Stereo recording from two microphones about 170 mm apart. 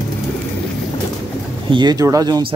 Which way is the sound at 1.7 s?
25° right (ahead or behind).